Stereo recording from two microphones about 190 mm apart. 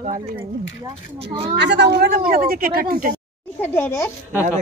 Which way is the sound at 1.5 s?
60° right (ahead or behind).